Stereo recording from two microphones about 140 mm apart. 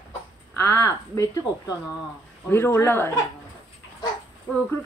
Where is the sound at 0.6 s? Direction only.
20° left (ahead or behind).